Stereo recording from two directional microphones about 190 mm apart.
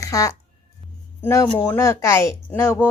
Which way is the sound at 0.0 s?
15° left (ahead or behind).